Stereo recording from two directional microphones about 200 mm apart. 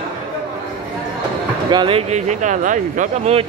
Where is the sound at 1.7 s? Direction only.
25° right (ahead or behind).